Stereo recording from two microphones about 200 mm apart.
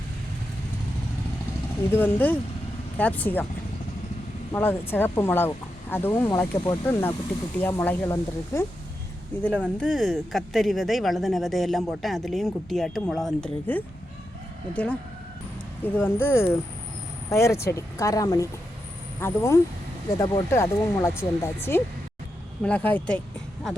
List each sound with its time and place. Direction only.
1.9 s speech: 10° left (ahead or behind)
4.5 s speech: 10° left (ahead or behind)
16.0 s speech: 10° left (ahead or behind)